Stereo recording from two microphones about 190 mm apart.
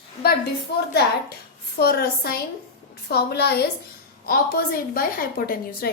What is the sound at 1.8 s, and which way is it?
A woman's voice, 55° left (ahead or behind).